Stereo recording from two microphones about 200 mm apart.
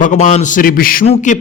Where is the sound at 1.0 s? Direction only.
35° left (ahead or behind).